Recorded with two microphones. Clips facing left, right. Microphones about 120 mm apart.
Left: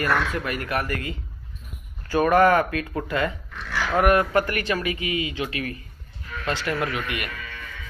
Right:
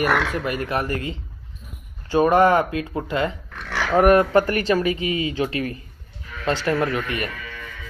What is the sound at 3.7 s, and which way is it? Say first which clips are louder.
Dog: right 2 dB; 70° right (ahead or behind).